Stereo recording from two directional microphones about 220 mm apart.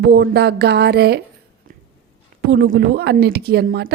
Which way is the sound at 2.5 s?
50° right (ahead or behind).